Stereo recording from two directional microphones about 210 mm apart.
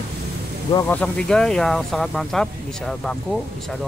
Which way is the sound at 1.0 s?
5° left (ahead or behind).